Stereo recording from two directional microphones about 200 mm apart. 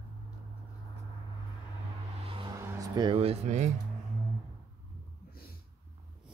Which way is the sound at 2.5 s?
15° right (ahead or behind).